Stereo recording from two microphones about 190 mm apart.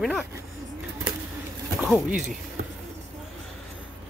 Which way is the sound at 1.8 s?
5° right (ahead or behind).